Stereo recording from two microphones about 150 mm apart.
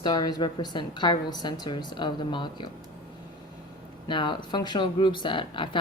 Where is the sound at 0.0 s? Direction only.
30° left (ahead or behind).